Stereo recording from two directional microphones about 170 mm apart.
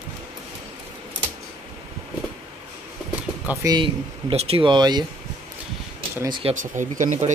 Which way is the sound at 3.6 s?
30° right (ahead or behind).